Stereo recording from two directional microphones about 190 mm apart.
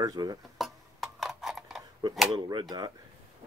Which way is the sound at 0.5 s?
Centre (ahead or behind).